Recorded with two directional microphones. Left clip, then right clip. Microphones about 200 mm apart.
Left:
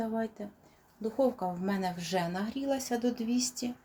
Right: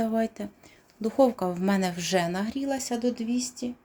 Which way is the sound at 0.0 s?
45° right (ahead or behind).